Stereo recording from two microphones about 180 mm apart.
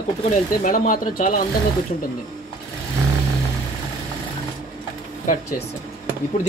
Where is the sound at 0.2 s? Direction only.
45° left (ahead or behind).